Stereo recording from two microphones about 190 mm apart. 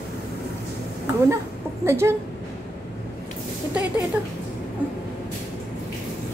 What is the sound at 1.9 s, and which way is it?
Speech, 15° right (ahead or behind).